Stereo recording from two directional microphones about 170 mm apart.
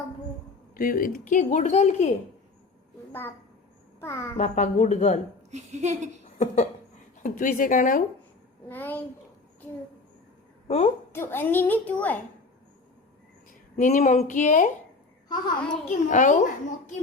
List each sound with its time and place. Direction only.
0.7 s a woman's voice: 55° left (ahead or behind)
3.1 s a woman's voice: 10° left (ahead or behind)
4.4 s a woman's voice: 40° left (ahead or behind)
5.5 s speech: 40° right (ahead or behind)
7.2 s a woman's voice: 50° left (ahead or behind)
8.7 s a child's voice: 10° left (ahead or behind)
10.7 s a woman's voice: 35° left (ahead or behind)
11.1 s a child's voice: 15° left (ahead or behind)
13.5 s a woman's voice: 50° left (ahead or behind)
15.9 s a woman's voice: 45° left (ahead or behind)